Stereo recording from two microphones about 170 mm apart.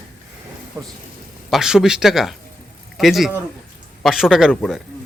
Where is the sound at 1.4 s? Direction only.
Centre (ahead or behind).